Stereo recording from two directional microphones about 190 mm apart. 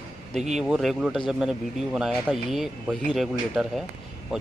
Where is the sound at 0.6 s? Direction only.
Centre (ahead or behind).